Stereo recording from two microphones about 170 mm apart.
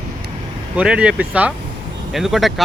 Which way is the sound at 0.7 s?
5° right (ahead or behind).